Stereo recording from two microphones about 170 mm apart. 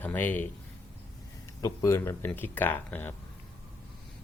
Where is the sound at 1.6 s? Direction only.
20° left (ahead or behind).